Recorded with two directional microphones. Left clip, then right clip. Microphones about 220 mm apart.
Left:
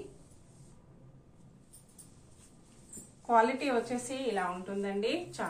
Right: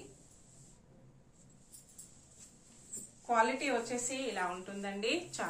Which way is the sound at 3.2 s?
Centre (ahead or behind).